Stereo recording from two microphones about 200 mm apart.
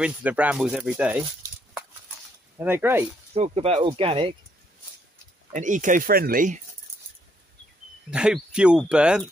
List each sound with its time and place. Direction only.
0.0 s speech: 5° right (ahead or behind)
2.6 s speech: 10° right (ahead or behind)
3.3 s speech: 30° right (ahead or behind)
5.5 s speech: 40° right (ahead or behind)
8.1 s speech: 5° right (ahead or behind)